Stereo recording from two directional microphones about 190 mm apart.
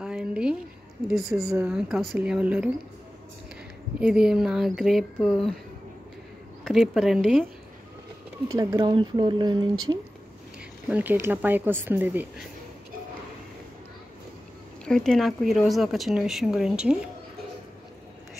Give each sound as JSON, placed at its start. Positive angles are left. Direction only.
{"t": 0.0, "sound": "a sound", "side_deg": -5}
{"t": 1.3, "sound": "speech", "side_deg": -15}
{"t": 1.7, "sound": "speech", "side_deg": -5}
{"t": 4.0, "sound": "speech", "side_deg": -5}
{"t": 6.6, "sound": "speech", "side_deg": 0}
{"t": 8.5, "sound": "speech", "side_deg": -20}
{"t": 10.9, "sound": "speech", "side_deg": -10}
{"t": 14.9, "sound": "speech", "side_deg": 5}